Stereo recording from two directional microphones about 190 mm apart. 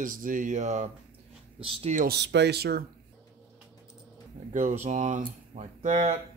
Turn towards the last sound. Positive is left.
turn(degrees=-35)  # may be behind; listen again after turning